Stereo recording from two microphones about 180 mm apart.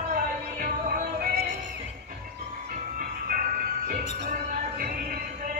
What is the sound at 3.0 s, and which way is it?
Music, 50° right (ahead or behind).